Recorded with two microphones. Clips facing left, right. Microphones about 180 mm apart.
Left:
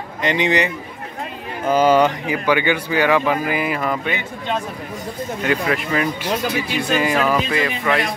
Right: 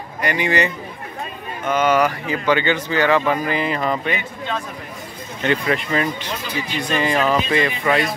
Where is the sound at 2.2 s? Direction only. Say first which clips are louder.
Even; 15° left (ahead or behind).